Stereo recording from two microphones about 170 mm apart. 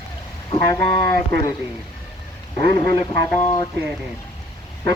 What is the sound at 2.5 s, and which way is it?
Speech, 20° left (ahead or behind).